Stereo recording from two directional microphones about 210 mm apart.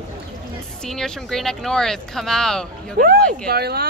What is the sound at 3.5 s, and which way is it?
Speech, 50° right (ahead or behind).